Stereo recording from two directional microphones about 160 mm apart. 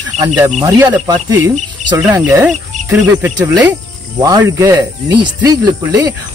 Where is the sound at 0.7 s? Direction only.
25° right (ahead or behind).